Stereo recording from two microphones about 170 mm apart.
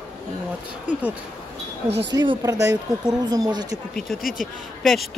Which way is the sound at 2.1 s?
25° right (ahead or behind).